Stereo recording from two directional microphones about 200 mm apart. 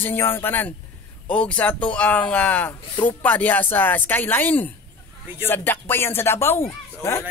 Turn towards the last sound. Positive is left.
turn(degrees=10)  # may be behind; listen again after turning